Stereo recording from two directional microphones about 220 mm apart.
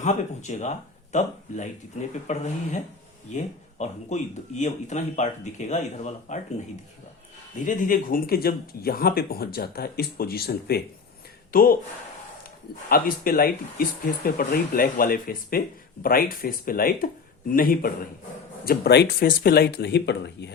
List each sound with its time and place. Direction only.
0.0 s speech: 35° left (ahead or behind)
7.6 s speech: 35° left (ahead or behind)
12.9 s speech: 40° left (ahead or behind)